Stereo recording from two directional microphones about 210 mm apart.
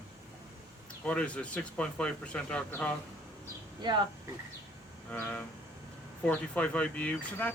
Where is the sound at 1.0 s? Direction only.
5° left (ahead or behind).